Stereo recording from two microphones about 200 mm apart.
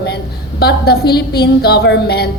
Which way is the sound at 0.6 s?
55° left (ahead or behind).